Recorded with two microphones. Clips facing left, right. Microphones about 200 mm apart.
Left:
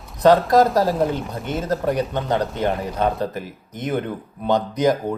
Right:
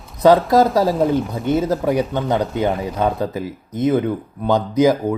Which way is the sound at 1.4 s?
10° right (ahead or behind).